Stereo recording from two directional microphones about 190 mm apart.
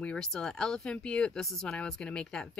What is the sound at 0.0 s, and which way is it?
Speech, 5° left (ahead or behind).